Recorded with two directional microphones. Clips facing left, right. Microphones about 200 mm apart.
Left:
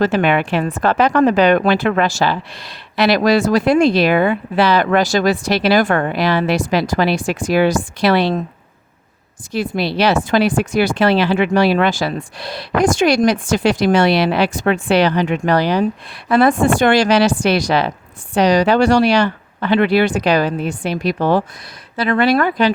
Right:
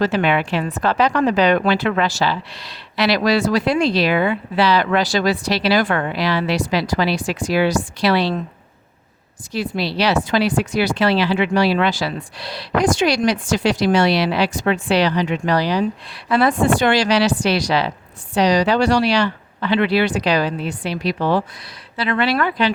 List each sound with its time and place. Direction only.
0.0 s speech: 50° left (ahead or behind)
9.5 s speech: 50° left (ahead or behind)